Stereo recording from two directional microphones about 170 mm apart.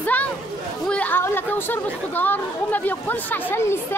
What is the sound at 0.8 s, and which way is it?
A woman's voice, 10° left (ahead or behind).